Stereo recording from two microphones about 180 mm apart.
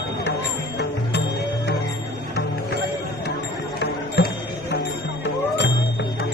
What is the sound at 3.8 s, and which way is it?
Music, 70° left (ahead or behind).